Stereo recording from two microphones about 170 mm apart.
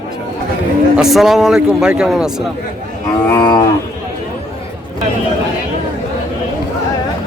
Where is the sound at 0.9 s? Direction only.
Centre (ahead or behind).